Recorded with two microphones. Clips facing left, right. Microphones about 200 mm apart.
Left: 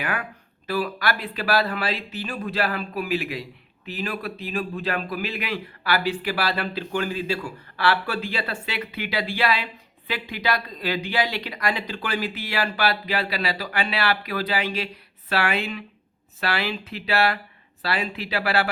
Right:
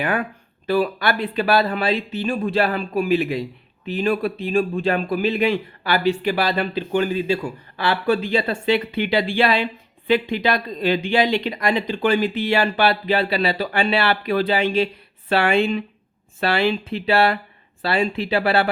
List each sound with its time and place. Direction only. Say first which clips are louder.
0.0 s a man's voice: right 7 dB; 30° right (ahead or behind)